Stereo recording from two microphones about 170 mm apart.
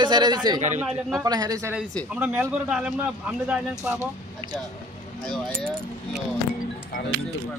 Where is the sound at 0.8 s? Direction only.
Centre (ahead or behind).